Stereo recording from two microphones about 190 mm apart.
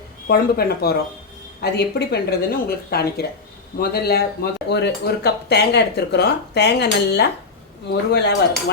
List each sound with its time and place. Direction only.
0.3 s speech: 55° left (ahead or behind)